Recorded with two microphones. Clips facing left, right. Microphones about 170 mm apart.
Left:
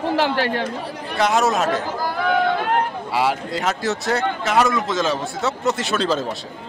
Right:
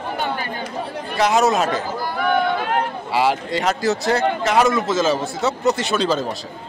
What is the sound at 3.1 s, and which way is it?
Speech, centre (ahead or behind).